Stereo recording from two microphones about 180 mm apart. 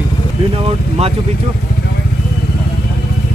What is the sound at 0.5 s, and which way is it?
Speech, 30° right (ahead or behind).